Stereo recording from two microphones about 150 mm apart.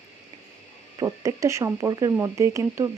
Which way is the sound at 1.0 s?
20° right (ahead or behind).